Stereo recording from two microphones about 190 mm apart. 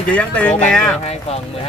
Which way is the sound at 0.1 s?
5° left (ahead or behind).